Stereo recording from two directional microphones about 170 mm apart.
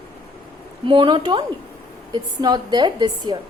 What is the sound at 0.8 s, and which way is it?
A woman's voice, 30° right (ahead or behind).